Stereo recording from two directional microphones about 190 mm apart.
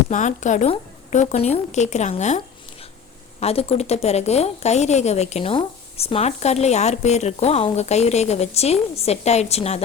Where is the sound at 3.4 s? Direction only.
30° left (ahead or behind).